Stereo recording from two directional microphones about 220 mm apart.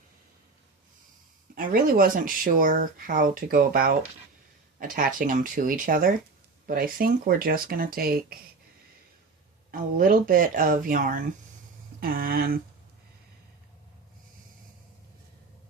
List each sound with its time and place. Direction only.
1.5 s speech: 40° right (ahead or behind)
10.0 s speech: 40° right (ahead or behind)